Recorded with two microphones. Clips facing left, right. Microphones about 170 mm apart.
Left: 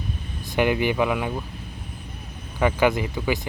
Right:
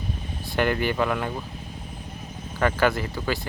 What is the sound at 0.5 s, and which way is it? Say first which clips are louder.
Speech: left 2 dB; 15° left (ahead or behind).